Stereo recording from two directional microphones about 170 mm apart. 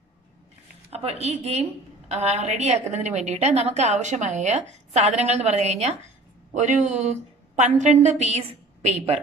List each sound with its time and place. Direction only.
0.9 s a woman's voice: 40° right (ahead or behind)